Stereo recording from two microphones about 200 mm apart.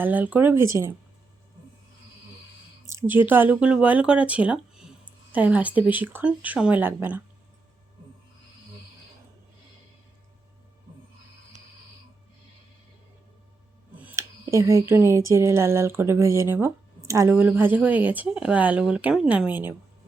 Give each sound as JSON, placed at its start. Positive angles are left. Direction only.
{"t": 0.0, "sound": "speech", "side_deg": -10}
{"t": 2.8, "sound": "speech", "side_deg": -10}
{"t": 14.0, "sound": "speech", "side_deg": -10}